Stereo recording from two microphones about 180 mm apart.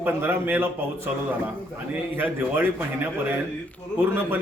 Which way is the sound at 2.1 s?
10° right (ahead or behind).